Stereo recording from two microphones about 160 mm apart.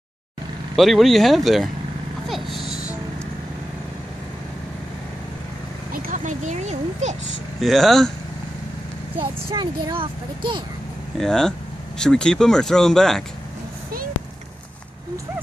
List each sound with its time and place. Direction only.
0.7 s speech: centre (ahead or behind)
2.2 s a sound: centre (ahead or behind)
5.9 s a sound: 55° right (ahead or behind)
7.6 s speech: centre (ahead or behind)
9.2 s speech: 30° right (ahead or behind)
11.1 s speech: 5° left (ahead or behind)